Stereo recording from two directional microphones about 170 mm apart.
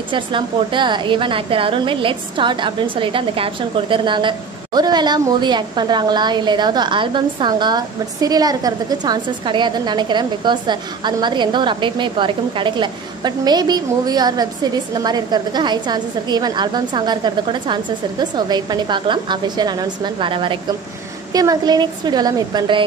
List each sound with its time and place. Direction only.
0.1 s a woman's voice: 30° right (ahead or behind)